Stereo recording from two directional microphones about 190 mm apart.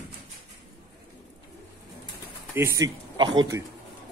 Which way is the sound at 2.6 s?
15° right (ahead or behind).